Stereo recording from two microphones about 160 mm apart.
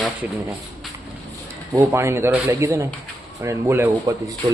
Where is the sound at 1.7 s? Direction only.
15° right (ahead or behind).